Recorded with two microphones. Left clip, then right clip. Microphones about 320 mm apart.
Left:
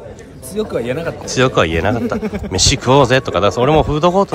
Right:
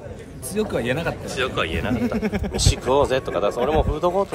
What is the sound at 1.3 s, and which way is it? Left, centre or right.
Speech, centre.